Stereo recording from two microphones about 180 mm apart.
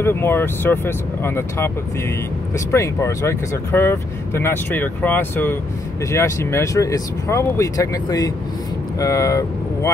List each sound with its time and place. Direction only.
0.0 s speech: 10° left (ahead or behind)
2.7 s speech: 15° left (ahead or behind)